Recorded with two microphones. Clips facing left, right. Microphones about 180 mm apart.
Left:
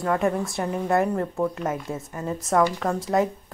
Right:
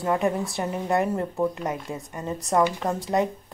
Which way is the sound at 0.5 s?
Centre (ahead or behind).